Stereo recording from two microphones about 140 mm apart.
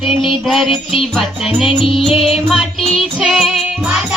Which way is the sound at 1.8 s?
40° left (ahead or behind).